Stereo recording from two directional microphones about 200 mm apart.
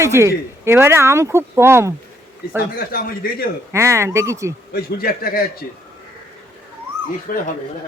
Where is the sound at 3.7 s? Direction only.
15° right (ahead or behind).